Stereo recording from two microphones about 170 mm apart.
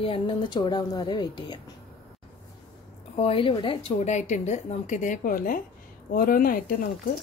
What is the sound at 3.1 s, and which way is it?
A woman's voice, 35° left (ahead or behind).